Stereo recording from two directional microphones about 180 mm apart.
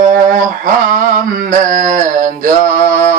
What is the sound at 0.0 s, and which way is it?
Mantra, 45° right (ahead or behind).